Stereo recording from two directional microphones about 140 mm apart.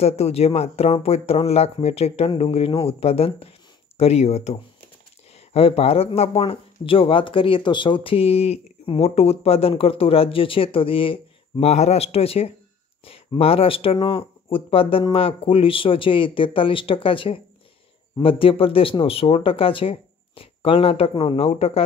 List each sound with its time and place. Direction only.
0.0 s speech: 45° left (ahead or behind)